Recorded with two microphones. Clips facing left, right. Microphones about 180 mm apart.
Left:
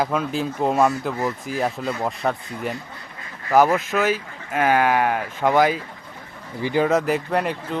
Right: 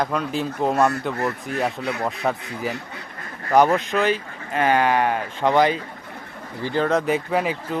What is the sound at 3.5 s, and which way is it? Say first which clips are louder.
Speech: even; 5° left (ahead or behind).